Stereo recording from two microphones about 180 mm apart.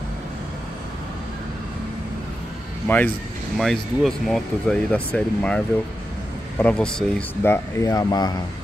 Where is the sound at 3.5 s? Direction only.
Centre (ahead or behind).